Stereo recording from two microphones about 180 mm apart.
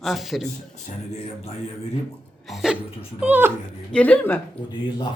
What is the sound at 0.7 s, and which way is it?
Speech, 35° left (ahead or behind).